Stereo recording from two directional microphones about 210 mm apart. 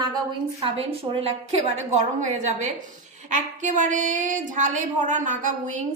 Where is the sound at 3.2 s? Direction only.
35° right (ahead or behind).